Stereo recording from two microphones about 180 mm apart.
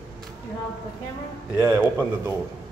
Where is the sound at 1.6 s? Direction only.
10° right (ahead or behind).